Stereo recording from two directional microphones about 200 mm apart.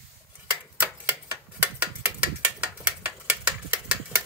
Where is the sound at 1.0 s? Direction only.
10° right (ahead or behind).